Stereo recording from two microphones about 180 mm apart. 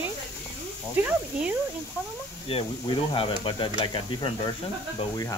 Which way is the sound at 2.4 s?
30° left (ahead or behind).